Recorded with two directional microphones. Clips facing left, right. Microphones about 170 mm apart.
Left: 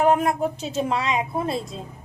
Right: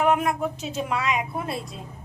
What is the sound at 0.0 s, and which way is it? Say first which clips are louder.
Speech: left 3 dB; 35° left (ahead or behind).